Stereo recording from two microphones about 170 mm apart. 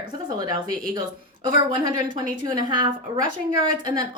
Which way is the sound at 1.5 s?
30° right (ahead or behind).